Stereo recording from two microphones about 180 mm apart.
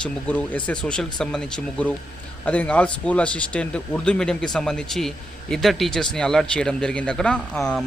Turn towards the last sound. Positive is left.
turn(degrees=5)  # may be behind; listen again after turning